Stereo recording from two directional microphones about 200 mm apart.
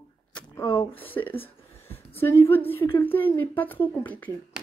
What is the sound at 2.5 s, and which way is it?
Speech, 10° left (ahead or behind).